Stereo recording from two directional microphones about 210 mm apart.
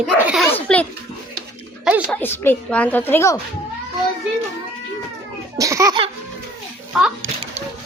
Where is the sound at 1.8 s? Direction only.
5° right (ahead or behind).